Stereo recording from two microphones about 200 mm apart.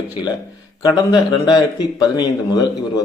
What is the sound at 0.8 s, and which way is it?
A man's voice, 20° left (ahead or behind).